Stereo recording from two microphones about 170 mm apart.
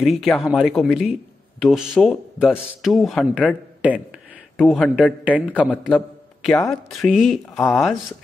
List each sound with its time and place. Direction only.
0.0 s a man's voice: centre (ahead or behind)
5.7 s a man's voice: 5° left (ahead or behind)